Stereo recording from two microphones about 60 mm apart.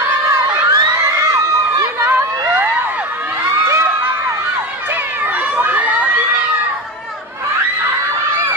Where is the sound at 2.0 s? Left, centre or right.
Right.